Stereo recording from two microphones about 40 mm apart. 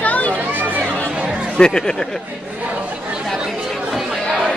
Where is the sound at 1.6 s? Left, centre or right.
Centre.